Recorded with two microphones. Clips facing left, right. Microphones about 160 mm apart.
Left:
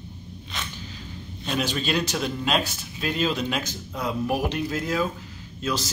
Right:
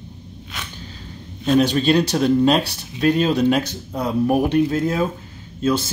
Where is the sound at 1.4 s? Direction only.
40° right (ahead or behind); by 3.7 s 55° right (ahead or behind).